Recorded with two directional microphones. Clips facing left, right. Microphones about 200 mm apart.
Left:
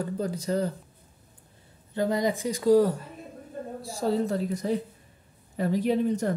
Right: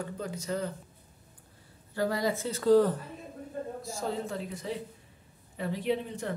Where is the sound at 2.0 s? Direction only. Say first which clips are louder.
Left 4 dB; 20° left (ahead or behind).